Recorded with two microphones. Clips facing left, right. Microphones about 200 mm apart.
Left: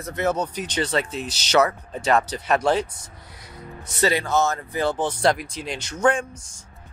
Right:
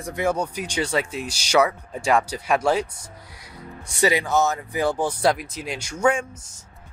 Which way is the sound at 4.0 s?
15° right (ahead or behind).